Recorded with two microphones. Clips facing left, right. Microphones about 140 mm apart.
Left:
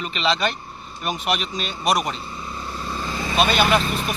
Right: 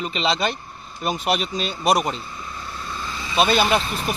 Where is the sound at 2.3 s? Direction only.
25° left (ahead or behind); by 3.4 s 45° left (ahead or behind).